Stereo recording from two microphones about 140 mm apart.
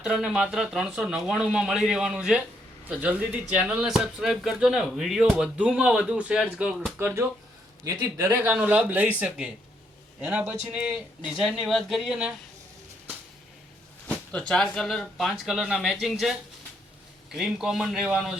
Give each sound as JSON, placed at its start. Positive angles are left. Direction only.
{"t": 0.0, "sound": "speech", "side_deg": -5}
{"t": 7.0, "sound": "speech", "side_deg": -20}
{"t": 8.3, "sound": "speech", "side_deg": -10}
{"t": 14.1, "sound": "speech", "side_deg": 5}